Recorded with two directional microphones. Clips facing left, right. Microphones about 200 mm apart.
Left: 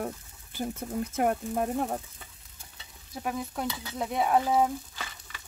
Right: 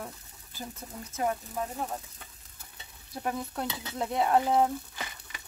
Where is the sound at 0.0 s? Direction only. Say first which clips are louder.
Left 7 dB; 60° left (ahead or behind).